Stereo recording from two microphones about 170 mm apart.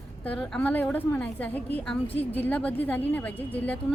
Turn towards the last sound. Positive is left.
turn(degrees=10)  # may be behind; listen again after turning